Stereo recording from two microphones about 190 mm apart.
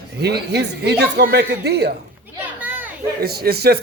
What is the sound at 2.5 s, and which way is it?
Children playing, 10° right (ahead or behind).